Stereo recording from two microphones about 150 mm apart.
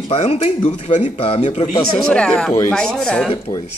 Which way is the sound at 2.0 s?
5° left (ahead or behind).